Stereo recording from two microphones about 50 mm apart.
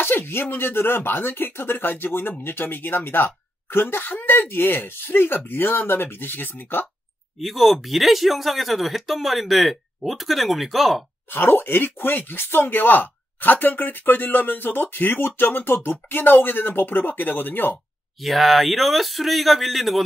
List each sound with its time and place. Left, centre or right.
0.0 s speech: left
7.3 s speech: centre
11.2 s speech: left
18.2 s speech: centre